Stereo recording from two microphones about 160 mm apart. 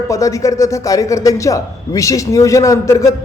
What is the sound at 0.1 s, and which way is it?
A man's voice, 20° left (ahead or behind).